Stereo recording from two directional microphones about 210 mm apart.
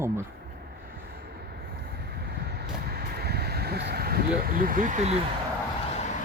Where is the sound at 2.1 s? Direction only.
50° right (ahead or behind); by 5.2 s 35° right (ahead or behind).